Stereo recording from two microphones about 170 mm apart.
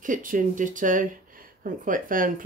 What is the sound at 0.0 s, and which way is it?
Speech, 50° right (ahead or behind).